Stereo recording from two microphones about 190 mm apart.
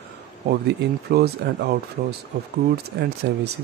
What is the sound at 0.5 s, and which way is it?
Speech, 55° right (ahead or behind).